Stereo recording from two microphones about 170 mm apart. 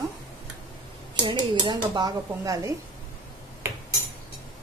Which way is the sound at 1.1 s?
30° right (ahead or behind).